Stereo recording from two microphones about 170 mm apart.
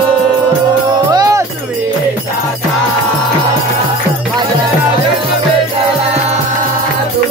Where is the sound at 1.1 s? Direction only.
20° right (ahead or behind).